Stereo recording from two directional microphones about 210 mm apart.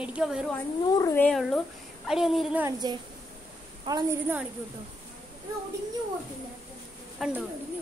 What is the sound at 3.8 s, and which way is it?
Speech, 15° right (ahead or behind).